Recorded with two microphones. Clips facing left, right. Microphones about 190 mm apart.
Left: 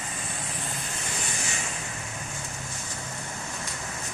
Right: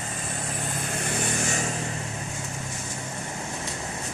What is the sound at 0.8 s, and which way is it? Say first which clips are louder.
Vehicle: right 7 dB; 55° right (ahead or behind).